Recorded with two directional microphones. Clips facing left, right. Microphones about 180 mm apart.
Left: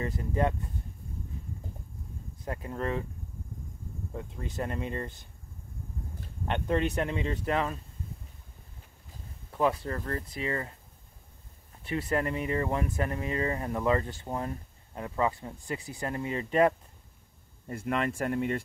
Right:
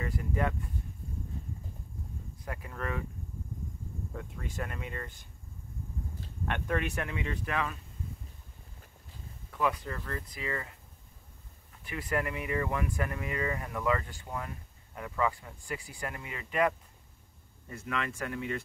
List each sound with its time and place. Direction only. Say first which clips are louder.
0.0 s speech: left 3 dB; 30° left (ahead or behind)
2.4 s speech: left 5 dB; 30° left (ahead or behind)
4.1 s speech: left 5 dB; 20° left (ahead or behind)
6.4 s speech: left 4 dB; 25° left (ahead or behind)
9.5 s speech: left 4 dB; 30° left (ahead or behind)
17.6 s speech: left 6 dB; 45° left (ahead or behind)